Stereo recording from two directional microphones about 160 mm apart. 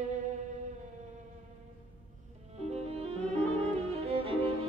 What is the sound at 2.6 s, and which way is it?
Music, 40° right (ahead or behind).